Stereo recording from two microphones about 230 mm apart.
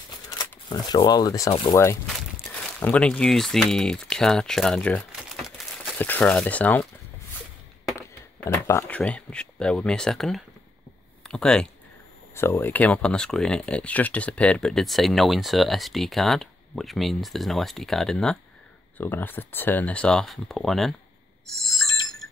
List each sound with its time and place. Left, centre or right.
0.3 s speech: centre
2.0 s speech: centre
8.4 s speech: centre